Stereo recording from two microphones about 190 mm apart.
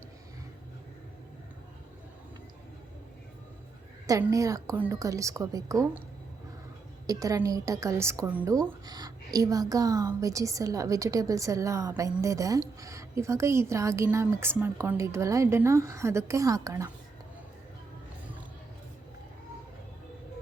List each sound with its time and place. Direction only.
4.0 s a woman's voice: 15° right (ahead or behind)
7.1 s a woman's voice: 20° right (ahead or behind)